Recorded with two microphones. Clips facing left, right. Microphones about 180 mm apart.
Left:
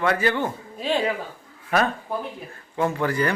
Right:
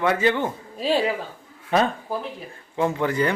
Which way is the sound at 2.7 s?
15° right (ahead or behind).